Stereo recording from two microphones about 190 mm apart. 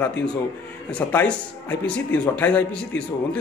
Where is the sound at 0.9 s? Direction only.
10° left (ahead or behind).